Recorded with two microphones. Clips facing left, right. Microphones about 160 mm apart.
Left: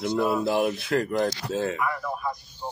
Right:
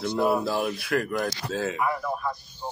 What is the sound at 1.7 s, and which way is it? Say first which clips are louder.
Speech: right 1 dB; 20° right (ahead or behind).